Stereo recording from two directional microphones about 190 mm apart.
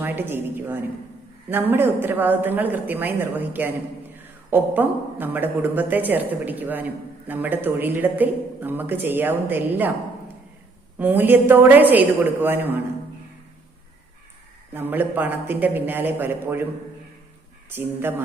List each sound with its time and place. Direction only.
0.0 s a woman's voice: 10° right (ahead or behind)
10.9 s a woman's voice: 10° right (ahead or behind)
14.7 s a woman's voice: 10° right (ahead or behind)
17.7 s a woman's voice: 10° right (ahead or behind)